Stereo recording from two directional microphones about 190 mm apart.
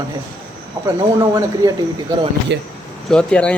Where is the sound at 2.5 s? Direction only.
65° right (ahead or behind).